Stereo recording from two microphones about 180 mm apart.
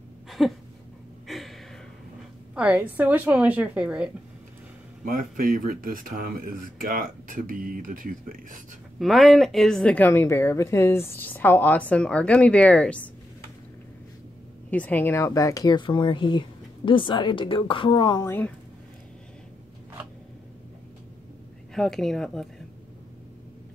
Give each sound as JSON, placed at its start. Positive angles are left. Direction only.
{"t": 0.4, "sound": "speech", "side_deg": 0}
{"t": 1.2, "sound": "gasp", "side_deg": 0}
{"t": 2.5, "sound": "speech", "side_deg": -5}
{"t": 5.0, "sound": "speech", "side_deg": -50}
{"t": 9.0, "sound": "a woman's voice", "side_deg": 0}
{"t": 14.7, "sound": "speech", "side_deg": 10}
{"t": 21.7, "sound": "speech", "side_deg": 0}